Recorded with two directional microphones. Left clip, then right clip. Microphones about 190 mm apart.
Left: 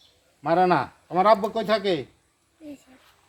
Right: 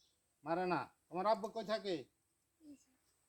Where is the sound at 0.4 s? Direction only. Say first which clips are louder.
Left 18 dB; 10° right (ahead or behind).